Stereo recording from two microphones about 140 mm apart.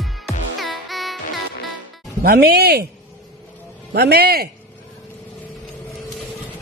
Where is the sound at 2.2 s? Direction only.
90° right.